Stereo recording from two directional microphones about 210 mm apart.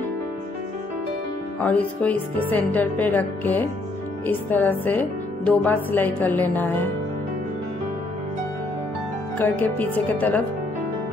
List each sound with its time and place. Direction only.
1.6 s a woman's voice: 5° left (ahead or behind)
9.4 s a woman's voice: 10° left (ahead or behind)